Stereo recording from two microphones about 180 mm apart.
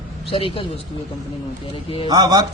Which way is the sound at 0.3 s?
30° left (ahead or behind).